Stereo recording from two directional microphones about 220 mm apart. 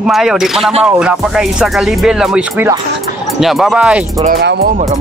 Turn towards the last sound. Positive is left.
turn(degrees=-45)  # may be behind; listen again after turning